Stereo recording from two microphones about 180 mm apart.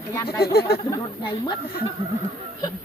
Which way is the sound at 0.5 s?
60° left (ahead or behind).